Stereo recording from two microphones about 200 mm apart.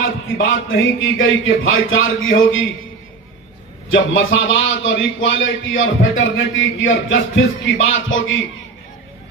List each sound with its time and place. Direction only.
0.4 s a man's voice: 75° left (ahead or behind)
3.9 s a man's voice: 70° left (ahead or behind)